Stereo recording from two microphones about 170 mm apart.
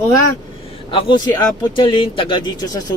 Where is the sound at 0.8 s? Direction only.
30° left (ahead or behind).